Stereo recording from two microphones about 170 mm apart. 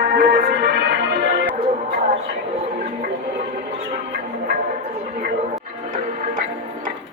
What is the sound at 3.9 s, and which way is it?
Music, 60° right (ahead or behind).